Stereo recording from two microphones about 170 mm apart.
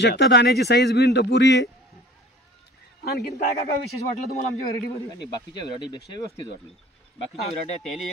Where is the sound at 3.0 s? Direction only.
65° left (ahead or behind).